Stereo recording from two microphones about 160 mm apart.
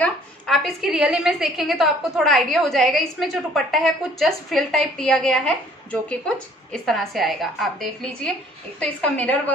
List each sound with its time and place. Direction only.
0.0 s a woman's voice: 5° left (ahead or behind)